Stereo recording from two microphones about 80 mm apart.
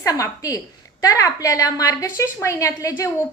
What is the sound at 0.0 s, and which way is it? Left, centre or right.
A woman's voice, left.